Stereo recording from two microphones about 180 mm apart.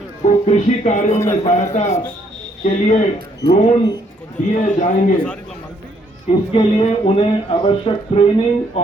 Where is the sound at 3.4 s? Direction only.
35° left (ahead or behind).